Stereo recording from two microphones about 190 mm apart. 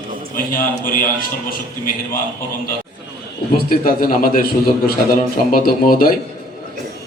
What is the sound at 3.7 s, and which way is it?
Speech, 50° left (ahead or behind).